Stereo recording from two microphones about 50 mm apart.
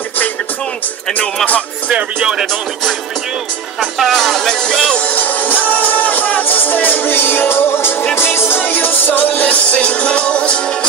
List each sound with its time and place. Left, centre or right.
1.2 s music: left
1.9 s music: right
4.0 s speech: centre
5.0 s music: left